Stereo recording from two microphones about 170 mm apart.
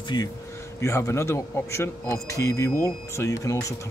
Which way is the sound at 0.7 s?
15° left (ahead or behind).